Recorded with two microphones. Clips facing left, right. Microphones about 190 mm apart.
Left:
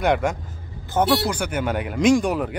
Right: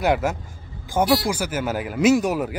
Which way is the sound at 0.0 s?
5° right (ahead or behind).